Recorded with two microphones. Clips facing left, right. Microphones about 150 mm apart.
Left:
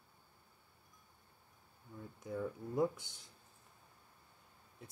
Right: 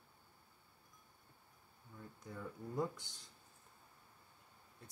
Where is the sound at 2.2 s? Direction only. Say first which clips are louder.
Left 7 dB; 10° left (ahead or behind).